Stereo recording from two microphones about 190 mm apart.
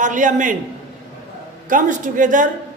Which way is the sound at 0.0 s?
40° right (ahead or behind).